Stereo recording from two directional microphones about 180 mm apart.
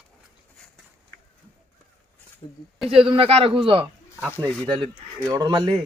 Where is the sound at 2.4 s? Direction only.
20° left (ahead or behind).